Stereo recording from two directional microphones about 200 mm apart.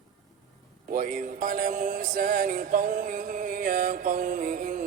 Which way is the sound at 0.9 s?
45° right (ahead or behind).